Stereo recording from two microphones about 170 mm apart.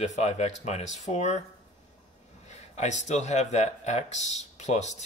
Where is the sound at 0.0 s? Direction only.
40° left (ahead or behind).